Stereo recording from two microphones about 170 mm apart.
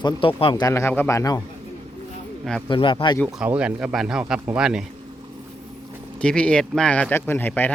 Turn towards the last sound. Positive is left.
turn(degrees=10)  # may be behind; listen again after turning